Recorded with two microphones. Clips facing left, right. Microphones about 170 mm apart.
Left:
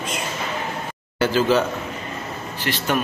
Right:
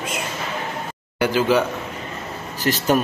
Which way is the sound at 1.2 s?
15° right (ahead or behind).